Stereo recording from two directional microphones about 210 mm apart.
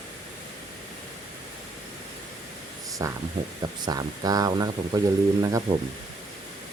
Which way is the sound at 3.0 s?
15° right (ahead or behind).